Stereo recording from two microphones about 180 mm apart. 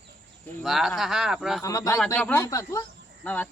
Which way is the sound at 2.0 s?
5° left (ahead or behind).